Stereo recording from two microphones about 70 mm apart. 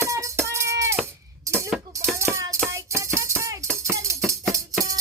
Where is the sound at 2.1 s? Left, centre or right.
Right.